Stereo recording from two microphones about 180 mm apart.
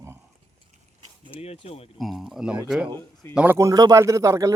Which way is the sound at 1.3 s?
30° left (ahead or behind).